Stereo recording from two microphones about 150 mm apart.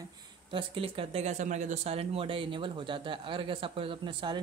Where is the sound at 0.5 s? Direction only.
35° right (ahead or behind).